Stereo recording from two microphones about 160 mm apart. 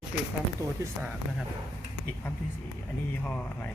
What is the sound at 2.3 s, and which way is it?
Speech, 10° left (ahead or behind).